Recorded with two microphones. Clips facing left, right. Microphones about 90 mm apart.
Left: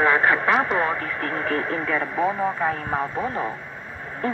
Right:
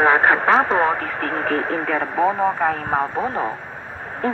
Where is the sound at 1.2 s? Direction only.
55° right (ahead or behind).